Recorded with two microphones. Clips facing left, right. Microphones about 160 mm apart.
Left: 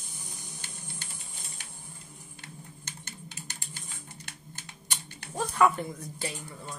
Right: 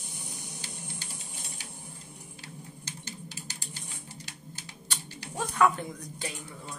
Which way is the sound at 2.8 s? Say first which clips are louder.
Right 3 dB; 55° left (ahead or behind).